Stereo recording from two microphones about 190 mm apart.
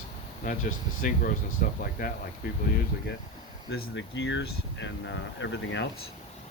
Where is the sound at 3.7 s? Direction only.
70° left (ahead or behind).